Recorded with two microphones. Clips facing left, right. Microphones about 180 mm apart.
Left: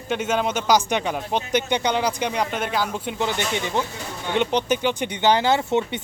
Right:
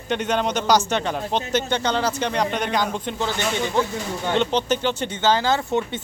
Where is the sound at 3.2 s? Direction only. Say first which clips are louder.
Even; 20° left (ahead or behind).